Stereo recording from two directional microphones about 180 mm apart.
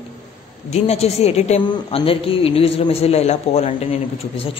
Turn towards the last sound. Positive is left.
turn(degrees=35)  # may be behind; listen again after turning